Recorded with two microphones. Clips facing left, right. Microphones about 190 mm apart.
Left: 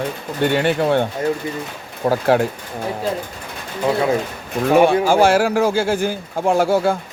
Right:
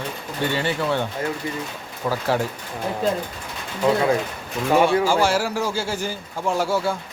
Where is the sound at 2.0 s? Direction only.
50° left (ahead or behind).